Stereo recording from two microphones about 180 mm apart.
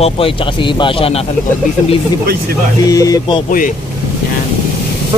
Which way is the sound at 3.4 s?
50° left (ahead or behind).